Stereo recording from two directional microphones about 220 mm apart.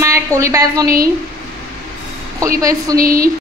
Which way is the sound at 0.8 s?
40° right (ahead or behind).